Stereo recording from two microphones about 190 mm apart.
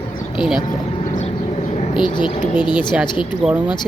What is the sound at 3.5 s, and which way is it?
Speech, 10° right (ahead or behind).